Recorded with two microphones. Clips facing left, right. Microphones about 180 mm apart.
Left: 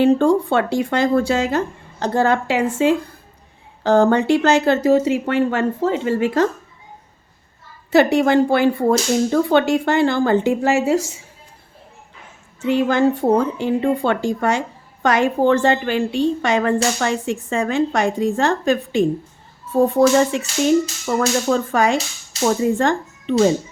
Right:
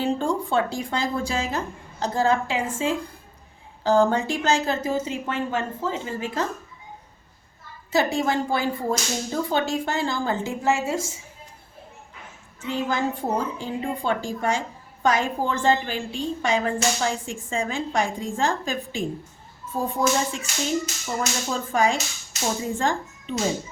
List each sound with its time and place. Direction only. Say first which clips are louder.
0.0 s a woman's voice: left 10 dB; 65° left (ahead or behind)
7.9 s a woman's voice: left 8 dB; 65° left (ahead or behind)
12.6 s a woman's voice: left 9 dB; 70° left (ahead or behind)